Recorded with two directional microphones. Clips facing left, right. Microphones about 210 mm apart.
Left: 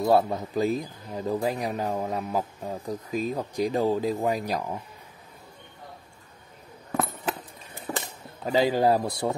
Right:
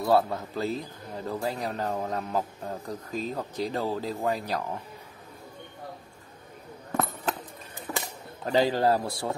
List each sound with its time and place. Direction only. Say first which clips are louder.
0.0 s speech: left 2 dB; 15° left (ahead or behind)
7.9 s a sound: left 2 dB; 30° left (ahead or behind)
8.5 s speech: left 2 dB; 10° left (ahead or behind)